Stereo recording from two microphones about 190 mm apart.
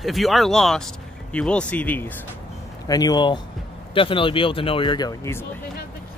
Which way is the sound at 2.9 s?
20° left (ahead or behind).